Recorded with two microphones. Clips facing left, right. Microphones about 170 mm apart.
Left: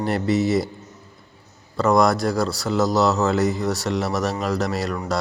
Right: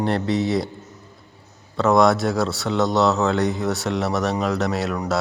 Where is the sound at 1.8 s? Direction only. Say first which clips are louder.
Right 1 dB; centre (ahead or behind).